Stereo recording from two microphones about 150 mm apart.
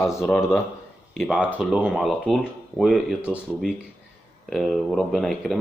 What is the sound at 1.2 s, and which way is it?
Speech, 5° right (ahead or behind).